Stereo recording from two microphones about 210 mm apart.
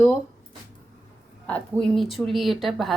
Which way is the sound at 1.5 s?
5° left (ahead or behind).